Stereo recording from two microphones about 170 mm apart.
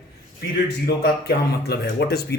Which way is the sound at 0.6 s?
75° left (ahead or behind).